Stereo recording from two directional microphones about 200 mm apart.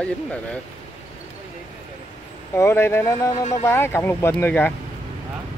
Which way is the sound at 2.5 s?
10° left (ahead or behind).